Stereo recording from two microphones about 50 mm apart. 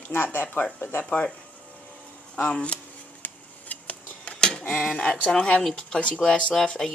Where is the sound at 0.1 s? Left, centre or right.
Left.